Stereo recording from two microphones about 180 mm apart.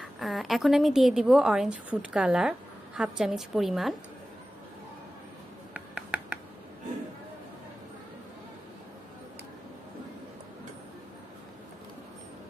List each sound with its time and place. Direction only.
0.0 s a woman's voice: centre (ahead or behind)
5.7 s finger snapping: 5° right (ahead or behind)